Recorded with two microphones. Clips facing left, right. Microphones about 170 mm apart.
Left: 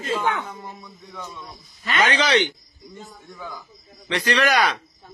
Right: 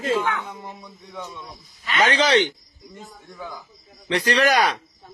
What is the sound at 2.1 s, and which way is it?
Speech, 30° right (ahead or behind).